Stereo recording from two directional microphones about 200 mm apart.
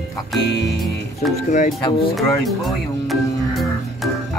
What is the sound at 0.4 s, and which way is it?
Speech, 55° left (ahead or behind).